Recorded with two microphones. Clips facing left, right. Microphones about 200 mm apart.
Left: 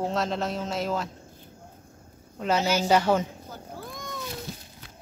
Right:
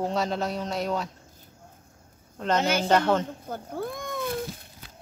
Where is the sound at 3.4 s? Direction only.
55° right (ahead or behind).